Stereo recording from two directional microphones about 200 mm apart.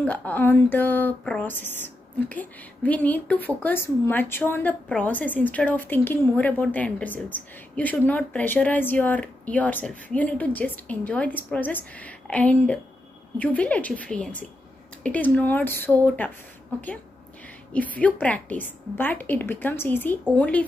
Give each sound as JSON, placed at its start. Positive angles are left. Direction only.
{"t": 0.0, "sound": "speech", "side_deg": 5}
{"t": 17.7, "sound": "speech", "side_deg": 5}